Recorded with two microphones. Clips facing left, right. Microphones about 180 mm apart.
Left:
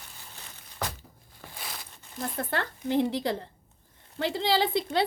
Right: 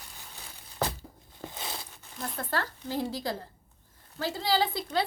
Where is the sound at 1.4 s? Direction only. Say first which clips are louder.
Right 4 dB; 25° right (ahead or behind).